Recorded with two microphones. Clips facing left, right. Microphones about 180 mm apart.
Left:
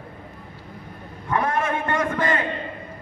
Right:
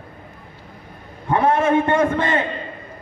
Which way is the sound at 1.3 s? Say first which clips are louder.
Right 6 dB; 30° right (ahead or behind).